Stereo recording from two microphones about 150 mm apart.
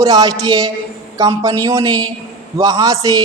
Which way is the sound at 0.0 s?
25° right (ahead or behind).